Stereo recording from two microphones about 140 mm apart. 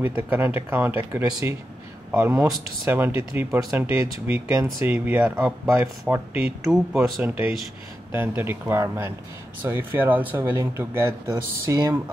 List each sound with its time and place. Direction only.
0.0 s speech: 15° right (ahead or behind)